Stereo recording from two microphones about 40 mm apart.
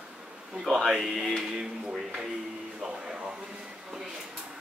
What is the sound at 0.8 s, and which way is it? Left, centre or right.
A woman's voice, centre.